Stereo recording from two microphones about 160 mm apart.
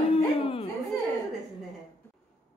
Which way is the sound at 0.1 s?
35° left (ahead or behind).